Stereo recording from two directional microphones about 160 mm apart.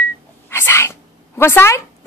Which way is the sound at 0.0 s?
15° left (ahead or behind).